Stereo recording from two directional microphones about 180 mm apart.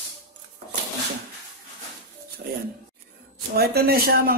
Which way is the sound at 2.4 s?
65° right (ahead or behind).